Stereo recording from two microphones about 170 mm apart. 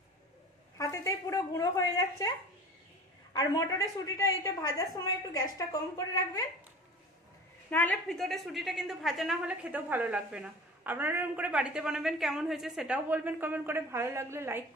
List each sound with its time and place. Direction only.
0.7 s speech: 20° left (ahead or behind)
3.3 s speech: 20° left (ahead or behind)
7.7 s a woman's voice: 10° left (ahead or behind); by 14.6 s 15° right (ahead or behind)